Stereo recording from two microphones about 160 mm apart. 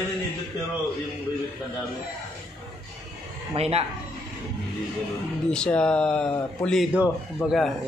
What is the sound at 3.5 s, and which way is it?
Speech, 40° right (ahead or behind).